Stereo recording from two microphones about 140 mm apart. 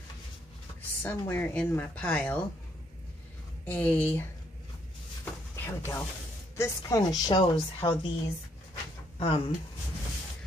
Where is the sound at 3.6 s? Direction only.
10° left (ahead or behind).